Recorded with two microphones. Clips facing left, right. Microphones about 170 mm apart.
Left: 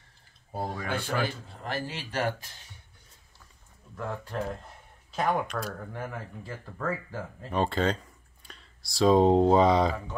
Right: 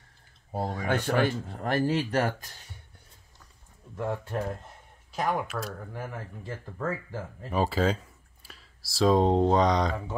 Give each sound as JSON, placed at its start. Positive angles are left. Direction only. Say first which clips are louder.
{"t": 0.5, "sound": "speech", "louder": "right 2 dB", "side_deg": -20}
{"t": 0.8, "sound": "speech", "louder": "right 6 dB", "side_deg": -55}
{"t": 3.9, "sound": "speech", "louder": "right 4 dB", "side_deg": -25}
{"t": 5.1, "sound": "speech", "louder": "left 1 dB", "side_deg": -5}
{"t": 6.0, "sound": "speech", "louder": "even", "side_deg": -20}
{"t": 7.4, "sound": "speech", "louder": "right 1 dB", "side_deg": -5}